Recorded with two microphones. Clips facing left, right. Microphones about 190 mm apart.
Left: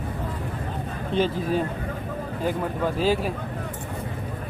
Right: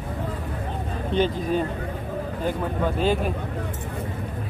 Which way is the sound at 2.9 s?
5° left (ahead or behind).